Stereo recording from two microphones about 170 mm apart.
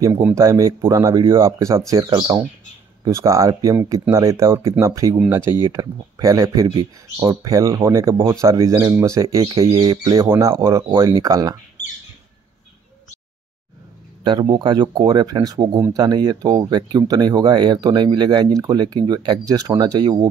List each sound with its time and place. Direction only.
0.0 s speech: 15° right (ahead or behind)
10.9 s speech: 30° right (ahead or behind)
14.2 s speech: 25° right (ahead or behind)